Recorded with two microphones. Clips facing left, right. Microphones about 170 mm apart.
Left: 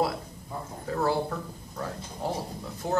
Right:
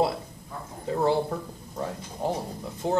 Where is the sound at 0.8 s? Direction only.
20° right (ahead or behind).